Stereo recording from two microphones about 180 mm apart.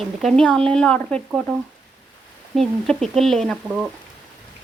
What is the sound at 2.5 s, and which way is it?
Speech, centre (ahead or behind).